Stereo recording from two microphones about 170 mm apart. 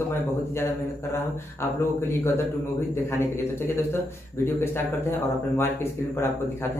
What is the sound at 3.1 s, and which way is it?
A man's voice, 15° left (ahead or behind).